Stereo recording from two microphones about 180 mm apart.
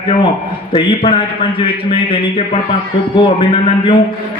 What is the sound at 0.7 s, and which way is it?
A man's voice, 30° left (ahead or behind).